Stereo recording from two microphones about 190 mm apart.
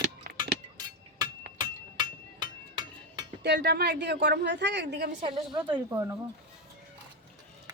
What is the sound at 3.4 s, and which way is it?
Speech, 60° right (ahead or behind).